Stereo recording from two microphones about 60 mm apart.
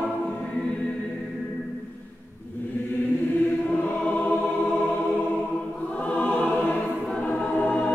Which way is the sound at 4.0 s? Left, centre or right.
Left.